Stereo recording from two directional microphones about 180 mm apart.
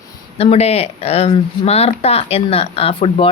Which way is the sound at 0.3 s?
35° left (ahead or behind).